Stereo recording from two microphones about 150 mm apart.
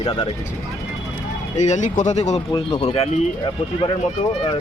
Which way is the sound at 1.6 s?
50° left (ahead or behind).